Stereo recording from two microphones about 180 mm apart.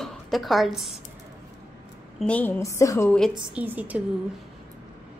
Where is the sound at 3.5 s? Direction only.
10° right (ahead or behind).